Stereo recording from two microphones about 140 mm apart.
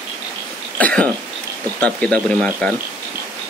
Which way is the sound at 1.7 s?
10° left (ahead or behind).